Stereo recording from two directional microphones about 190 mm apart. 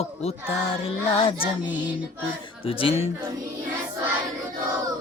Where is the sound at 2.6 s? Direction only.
30° left (ahead or behind).